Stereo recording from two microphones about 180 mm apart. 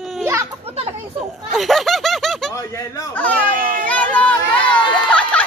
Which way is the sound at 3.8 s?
10° left (ahead or behind).